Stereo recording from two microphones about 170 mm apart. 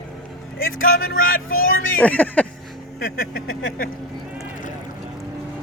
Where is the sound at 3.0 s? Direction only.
55° left (ahead or behind).